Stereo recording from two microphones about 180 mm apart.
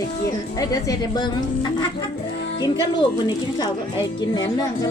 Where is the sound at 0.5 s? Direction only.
20° left (ahead or behind).